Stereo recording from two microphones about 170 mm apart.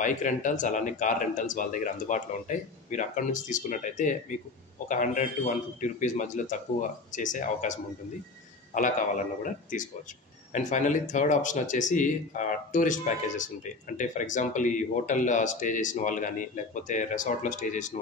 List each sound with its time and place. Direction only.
0.0 s speech: 50° left (ahead or behind)